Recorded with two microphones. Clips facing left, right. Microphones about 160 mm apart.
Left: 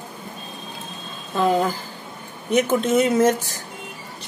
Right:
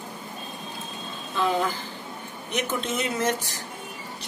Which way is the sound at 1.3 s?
40° left (ahead or behind).